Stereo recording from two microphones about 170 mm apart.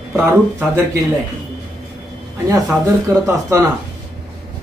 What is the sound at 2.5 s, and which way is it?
Speech, 15° right (ahead or behind).